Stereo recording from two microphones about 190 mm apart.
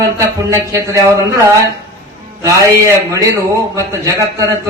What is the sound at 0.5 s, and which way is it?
Speech, 15° right (ahead or behind).